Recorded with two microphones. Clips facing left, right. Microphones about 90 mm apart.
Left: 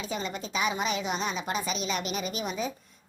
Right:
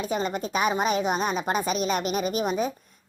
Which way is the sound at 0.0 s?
45° right (ahead or behind).